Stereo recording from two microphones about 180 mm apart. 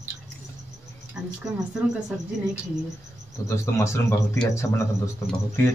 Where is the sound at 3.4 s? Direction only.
15° left (ahead or behind).